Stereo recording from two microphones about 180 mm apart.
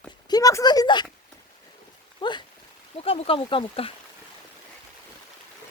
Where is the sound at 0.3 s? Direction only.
20° left (ahead or behind).